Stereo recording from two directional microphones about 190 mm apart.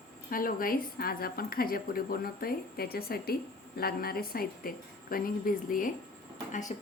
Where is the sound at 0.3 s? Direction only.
50° left (ahead or behind).